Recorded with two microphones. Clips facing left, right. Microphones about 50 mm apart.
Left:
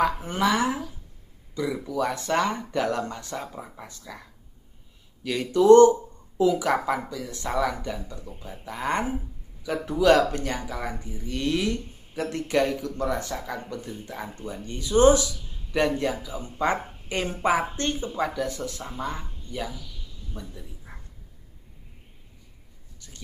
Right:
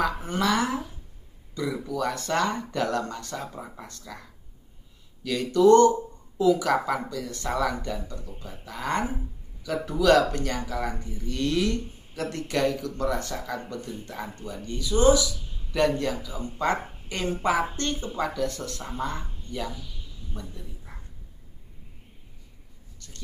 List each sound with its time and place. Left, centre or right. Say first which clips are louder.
0.3 s speech: left 1 dB; left
1.6 s speech: left 2 dB; centre
3.5 s speech: even; centre
5.2 s speech: right 2 dB; left
7.5 s speech: left 1 dB; centre; by 15.2 s left
15.7 s speech: even; centre
22.9 s writing: even; centre